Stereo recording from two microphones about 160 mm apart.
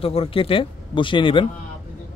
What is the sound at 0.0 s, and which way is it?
A man's voice, 35° left (ahead or behind).